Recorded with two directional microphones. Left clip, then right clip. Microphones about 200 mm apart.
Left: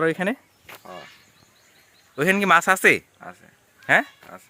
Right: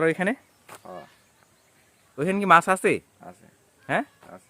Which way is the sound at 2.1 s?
10° left (ahead or behind).